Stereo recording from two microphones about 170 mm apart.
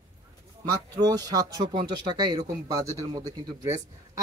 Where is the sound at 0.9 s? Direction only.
20° right (ahead or behind).